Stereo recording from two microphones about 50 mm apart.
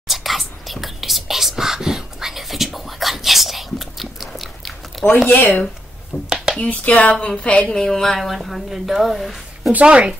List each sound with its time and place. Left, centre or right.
0.1 s whispering: centre
5.0 s a sound: centre
5.3 s speech: left
6.2 s a sound: centre
6.6 s speech: left
7.7 s speech: centre
8.2 s a woman's voice: centre
9.8 s speech: centre